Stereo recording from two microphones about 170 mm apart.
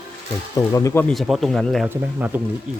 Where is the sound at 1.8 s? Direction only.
10° right (ahead or behind).